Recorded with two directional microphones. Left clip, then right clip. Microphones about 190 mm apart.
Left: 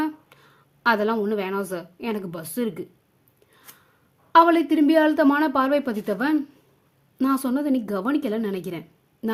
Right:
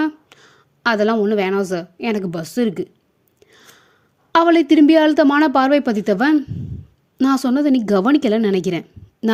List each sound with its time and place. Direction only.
0.0 s a woman's voice: 30° right (ahead or behind)
3.4 s gasp: 35° right (ahead or behind)
4.3 s a woman's voice: 35° right (ahead or behind)